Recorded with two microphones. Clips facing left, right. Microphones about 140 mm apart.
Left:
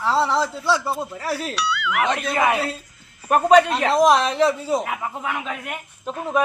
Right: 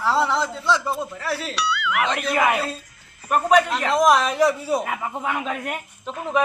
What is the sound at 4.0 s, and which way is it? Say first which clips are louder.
Speech: left 1 dB; 25° left (ahead or behind).